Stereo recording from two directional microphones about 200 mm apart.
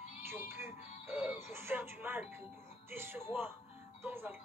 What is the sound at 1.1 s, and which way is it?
Speech, 10° right (ahead or behind).